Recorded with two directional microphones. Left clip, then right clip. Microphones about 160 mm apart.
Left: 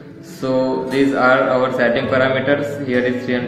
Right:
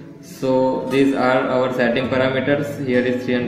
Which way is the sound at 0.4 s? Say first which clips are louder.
Even; 30° right (ahead or behind).